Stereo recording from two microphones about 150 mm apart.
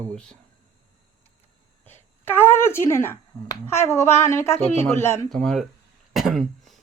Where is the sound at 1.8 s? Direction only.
15° left (ahead or behind).